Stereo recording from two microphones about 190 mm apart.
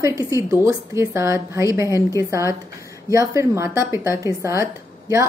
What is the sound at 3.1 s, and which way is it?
Speech, 15° right (ahead or behind).